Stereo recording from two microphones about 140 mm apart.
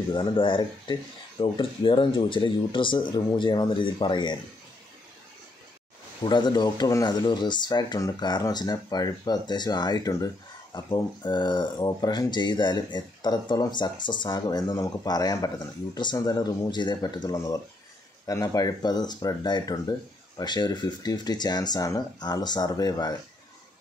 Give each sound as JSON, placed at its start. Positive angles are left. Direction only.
{"t": 0.1, "sound": "speech", "side_deg": 35}
{"t": 6.2, "sound": "speech", "side_deg": 30}